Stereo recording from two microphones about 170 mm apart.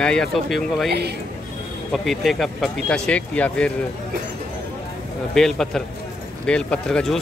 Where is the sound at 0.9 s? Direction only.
70° right (ahead or behind).